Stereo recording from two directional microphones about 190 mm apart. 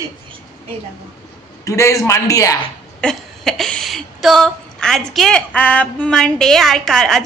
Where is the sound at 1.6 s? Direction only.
15° left (ahead or behind).